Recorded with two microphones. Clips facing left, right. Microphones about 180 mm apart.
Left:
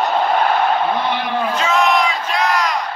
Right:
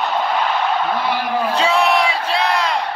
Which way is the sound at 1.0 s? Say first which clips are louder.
Even; 10° right (ahead or behind).